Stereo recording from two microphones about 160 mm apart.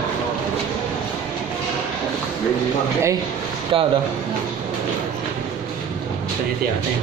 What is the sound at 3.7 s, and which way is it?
Speech, 30° right (ahead or behind).